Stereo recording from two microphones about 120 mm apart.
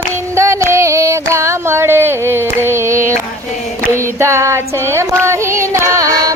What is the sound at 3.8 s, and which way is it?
Child singing, 25° right (ahead or behind).